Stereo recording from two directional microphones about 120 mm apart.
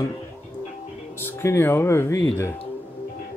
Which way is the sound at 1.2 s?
20° left (ahead or behind).